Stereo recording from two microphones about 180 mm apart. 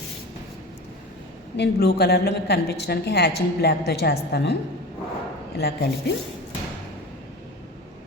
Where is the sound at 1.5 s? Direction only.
65° left (ahead or behind).